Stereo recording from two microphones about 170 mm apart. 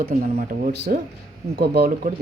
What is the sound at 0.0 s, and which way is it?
Speech, 60° right (ahead or behind).